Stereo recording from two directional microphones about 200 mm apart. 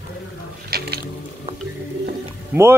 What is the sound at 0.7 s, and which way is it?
Squish, 50° right (ahead or behind).